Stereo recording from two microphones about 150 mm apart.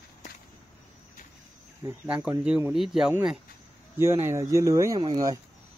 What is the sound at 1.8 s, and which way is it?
Speech, 10° right (ahead or behind).